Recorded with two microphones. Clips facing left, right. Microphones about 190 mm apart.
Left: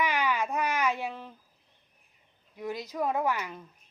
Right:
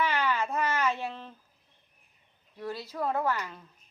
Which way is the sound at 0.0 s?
15° left (ahead or behind).